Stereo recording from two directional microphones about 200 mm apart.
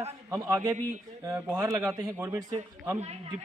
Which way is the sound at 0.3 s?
15° right (ahead or behind).